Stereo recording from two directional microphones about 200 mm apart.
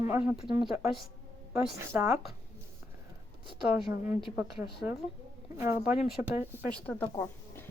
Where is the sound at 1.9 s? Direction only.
10° right (ahead or behind).